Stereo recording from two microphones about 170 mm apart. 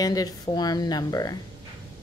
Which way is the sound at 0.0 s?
20° left (ahead or behind).